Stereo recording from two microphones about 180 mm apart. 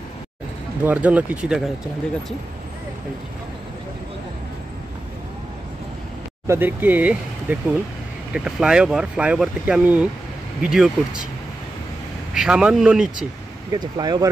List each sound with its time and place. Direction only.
0.8 s speech: 10° right (ahead or behind)
6.4 s speech: 15° right (ahead or behind)
12.4 s speech: 5° right (ahead or behind)
13.7 s speech: 20° right (ahead or behind)